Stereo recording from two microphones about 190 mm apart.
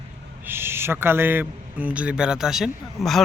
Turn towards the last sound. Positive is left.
turn(degrees=0)  # may be behind; listen again after turning